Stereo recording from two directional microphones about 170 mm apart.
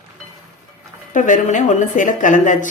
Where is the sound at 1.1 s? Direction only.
50° left (ahead or behind).